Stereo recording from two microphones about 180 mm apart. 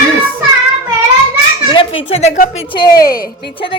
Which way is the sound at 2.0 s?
35° left (ahead or behind).